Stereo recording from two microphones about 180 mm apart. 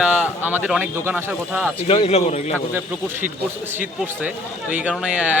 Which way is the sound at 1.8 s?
35° left (ahead or behind).